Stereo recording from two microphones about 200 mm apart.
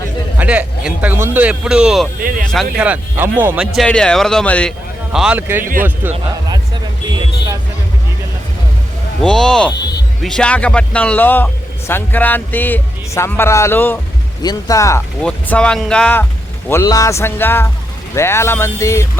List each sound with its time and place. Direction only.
0.3 s speech: 5° right (ahead or behind)
2.2 s speech: 45° right (ahead or behind)
2.7 s speech: 5° right (ahead or behind)
5.1 s speech: 5° right (ahead or behind)
9.2 s a man's voice: 5° left (ahead or behind)